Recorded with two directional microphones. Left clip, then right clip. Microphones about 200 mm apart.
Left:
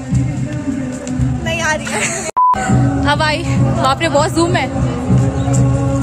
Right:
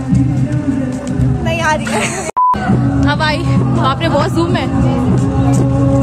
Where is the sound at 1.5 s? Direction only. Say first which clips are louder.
Right 2 dB; 10° left (ahead or behind).